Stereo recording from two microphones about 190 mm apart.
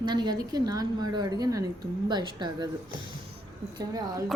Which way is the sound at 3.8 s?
20° right (ahead or behind).